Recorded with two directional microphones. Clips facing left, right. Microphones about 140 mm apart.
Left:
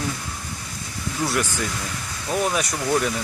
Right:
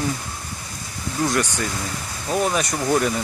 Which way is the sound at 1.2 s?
5° left (ahead or behind).